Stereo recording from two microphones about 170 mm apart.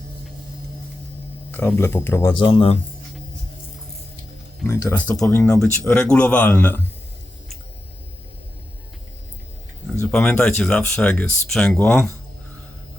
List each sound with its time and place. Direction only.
1.5 s speech: 10° left (ahead or behind)
2.3 s speech: 30° left (ahead or behind)
4.6 s speech: 15° left (ahead or behind)
10.0 s speech: 5° left (ahead or behind)